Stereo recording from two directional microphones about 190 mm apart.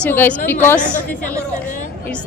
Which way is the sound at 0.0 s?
10° left (ahead or behind).